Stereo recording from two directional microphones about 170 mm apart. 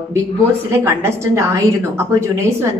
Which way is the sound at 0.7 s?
15° right (ahead or behind).